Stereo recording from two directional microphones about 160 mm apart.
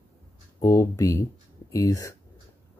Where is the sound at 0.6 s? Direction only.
20° left (ahead or behind).